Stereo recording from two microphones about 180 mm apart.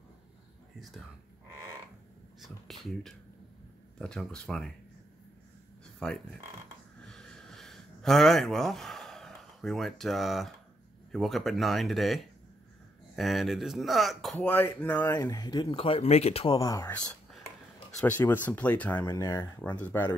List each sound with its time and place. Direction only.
2.4 s speech: centre (ahead or behind)
5.9 s speech: 5° left (ahead or behind)
7.1 s a sound: 5° left (ahead or behind)
11.1 s speech: centre (ahead or behind); by 16.5 s 35° left (ahead or behind)
16.5 s speech: 20° left (ahead or behind)
16.9 s whispering: 5° left (ahead or behind)
18.0 s speech: 10° left (ahead or behind)